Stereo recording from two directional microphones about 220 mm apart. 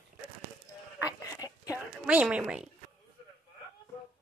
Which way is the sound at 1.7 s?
5° right (ahead or behind).